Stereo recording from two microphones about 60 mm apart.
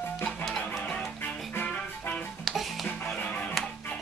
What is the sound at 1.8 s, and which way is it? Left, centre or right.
Music, left.